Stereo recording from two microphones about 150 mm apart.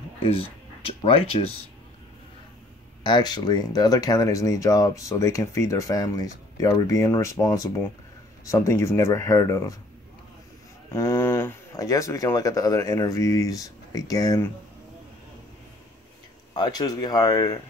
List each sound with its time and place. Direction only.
0.2 s speech: 40° left (ahead or behind)
3.0 s speech: 30° left (ahead or behind)
10.9 s speech: 15° left (ahead or behind)
16.5 s speech: 30° left (ahead or behind)